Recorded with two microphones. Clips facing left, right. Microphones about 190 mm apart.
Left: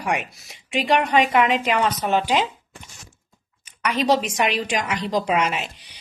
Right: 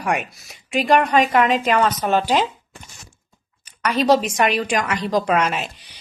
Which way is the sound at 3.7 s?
40° right (ahead or behind).